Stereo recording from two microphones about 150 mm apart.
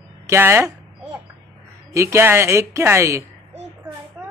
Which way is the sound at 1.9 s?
20° right (ahead or behind).